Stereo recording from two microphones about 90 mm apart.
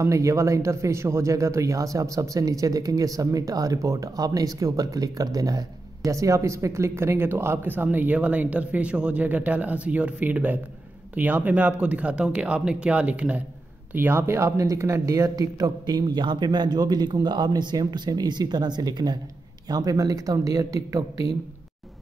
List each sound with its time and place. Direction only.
0.0 s speech: 35° right (ahead or behind); by 13.4 s 15° right (ahead or behind)
13.9 s speech: 25° right (ahead or behind); by 21.0 s 40° right (ahead or behind)